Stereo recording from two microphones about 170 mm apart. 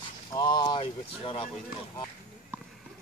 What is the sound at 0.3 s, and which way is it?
Speech, 25° left (ahead or behind).